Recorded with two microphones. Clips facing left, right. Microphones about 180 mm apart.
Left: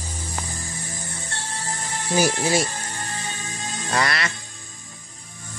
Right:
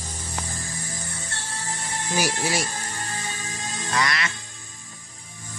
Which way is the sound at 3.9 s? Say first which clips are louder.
Left 2 dB; 35° left (ahead or behind).